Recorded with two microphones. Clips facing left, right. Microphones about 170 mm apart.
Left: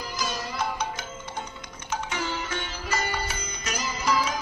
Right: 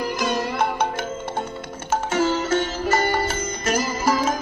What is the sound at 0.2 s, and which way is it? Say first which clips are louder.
Music: right 6 dB; 60° right (ahead or behind).